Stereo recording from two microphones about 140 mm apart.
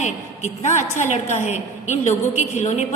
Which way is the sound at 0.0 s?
60° left (ahead or behind).